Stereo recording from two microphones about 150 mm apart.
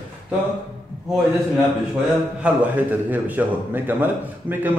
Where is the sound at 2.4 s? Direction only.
10° right (ahead or behind).